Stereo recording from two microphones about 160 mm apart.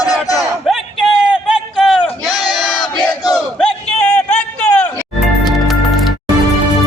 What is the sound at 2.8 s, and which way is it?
Battle cry, 25° left (ahead or behind).